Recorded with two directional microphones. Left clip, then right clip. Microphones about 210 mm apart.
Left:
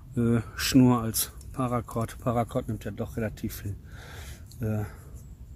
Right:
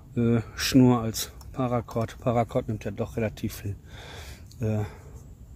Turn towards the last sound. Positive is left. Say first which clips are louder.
# right 3 dB
turn(degrees=-25)  # may be behind; listen again after turning